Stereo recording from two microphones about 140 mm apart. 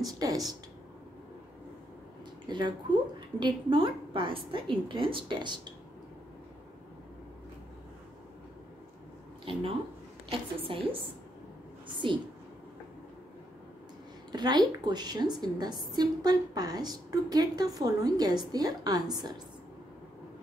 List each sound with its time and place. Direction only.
0.0 s a woman's voice: 25° right (ahead or behind)
2.4 s a woman's voice: 35° right (ahead or behind)
9.4 s a woman's voice: 40° right (ahead or behind)
14.3 s a woman's voice: 30° right (ahead or behind)